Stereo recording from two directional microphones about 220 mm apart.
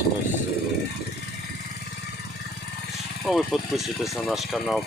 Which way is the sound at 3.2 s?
Centre (ahead or behind).